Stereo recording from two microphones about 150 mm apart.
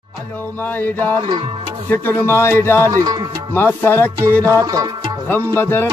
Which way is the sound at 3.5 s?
15° left (ahead or behind).